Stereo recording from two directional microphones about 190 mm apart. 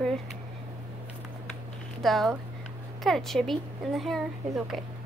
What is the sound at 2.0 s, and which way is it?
Speech, centre (ahead or behind).